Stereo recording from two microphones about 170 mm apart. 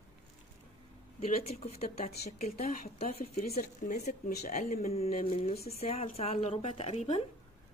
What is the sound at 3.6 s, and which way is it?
Speech, 50° left (ahead or behind).